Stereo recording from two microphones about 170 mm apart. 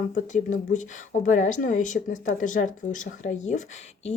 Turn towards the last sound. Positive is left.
turn(degrees=40)  # may be behind; listen again after turning